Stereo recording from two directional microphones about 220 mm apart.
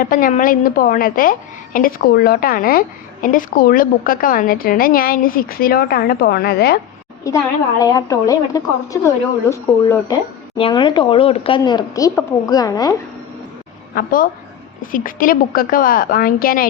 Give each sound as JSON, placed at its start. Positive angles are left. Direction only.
{"t": 0.0, "sound": "a woman's voice", "side_deg": 40}
{"t": 7.8, "sound": "speech", "side_deg": 15}
{"t": 13.9, "sound": "a woman's voice", "side_deg": 40}